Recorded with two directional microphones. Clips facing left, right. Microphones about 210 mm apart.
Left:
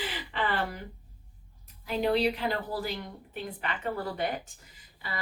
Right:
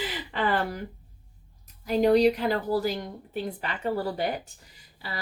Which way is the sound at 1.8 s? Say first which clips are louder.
Right 7 dB; 40° right (ahead or behind).